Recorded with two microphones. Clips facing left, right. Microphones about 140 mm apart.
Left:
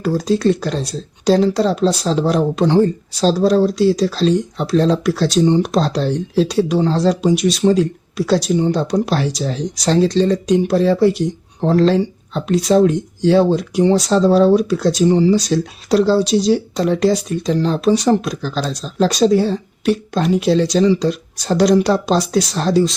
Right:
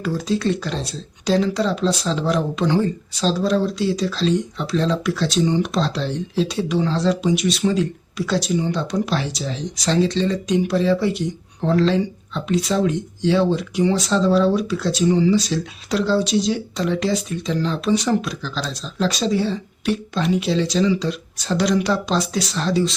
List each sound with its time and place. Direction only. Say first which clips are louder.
0.0 s speech: left 6 dB; 40° left (ahead or behind)